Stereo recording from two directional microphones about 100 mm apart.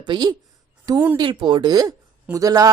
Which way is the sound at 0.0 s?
50° right (ahead or behind).